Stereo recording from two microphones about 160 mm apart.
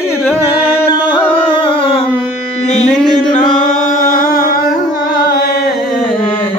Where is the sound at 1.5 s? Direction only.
35° left (ahead or behind).